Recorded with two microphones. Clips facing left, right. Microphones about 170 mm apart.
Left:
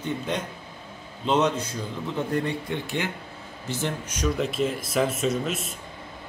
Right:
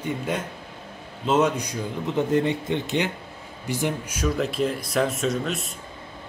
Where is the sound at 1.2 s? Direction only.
5° right (ahead or behind).